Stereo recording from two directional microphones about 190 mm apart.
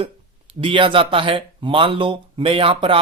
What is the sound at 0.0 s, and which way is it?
Speech, 30° right (ahead or behind).